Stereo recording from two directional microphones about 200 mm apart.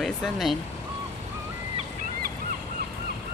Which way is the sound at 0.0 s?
Centre (ahead or behind).